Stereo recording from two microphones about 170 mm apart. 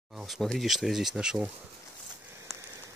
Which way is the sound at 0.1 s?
Centre (ahead or behind).